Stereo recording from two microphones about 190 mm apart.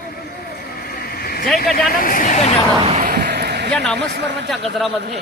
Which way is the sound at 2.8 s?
35° right (ahead or behind).